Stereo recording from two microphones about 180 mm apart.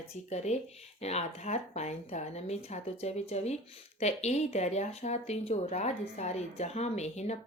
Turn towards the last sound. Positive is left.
turn(degrees=35)  # may be behind; listen again after turning